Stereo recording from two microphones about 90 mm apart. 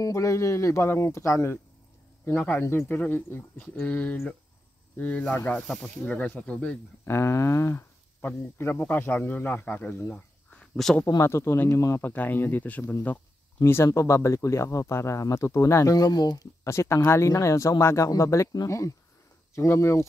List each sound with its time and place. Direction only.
0.0 s speech: 35° left (ahead or behind); by 6.8 s 10° left (ahead or behind)
7.1 s speech: 30° left (ahead or behind)
8.2 s speech: 20° left (ahead or behind)
10.1 s a sound: 10° left (ahead or behind)
11.1 s speech: 35° left (ahead or behind)
12.1 s speech: 20° left (ahead or behind)
13.7 s speech: 30° left (ahead or behind); by 16.4 s 50° left (ahead or behind)
16.6 s speech: 30° left (ahead or behind)